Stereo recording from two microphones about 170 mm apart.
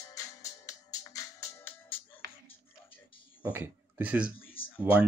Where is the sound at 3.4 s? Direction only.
15° right (ahead or behind).